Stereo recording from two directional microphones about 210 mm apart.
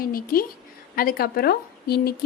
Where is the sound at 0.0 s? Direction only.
45° left (ahead or behind).